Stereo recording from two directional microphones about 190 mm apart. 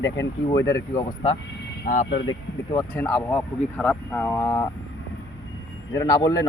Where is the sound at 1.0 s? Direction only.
20° left (ahead or behind).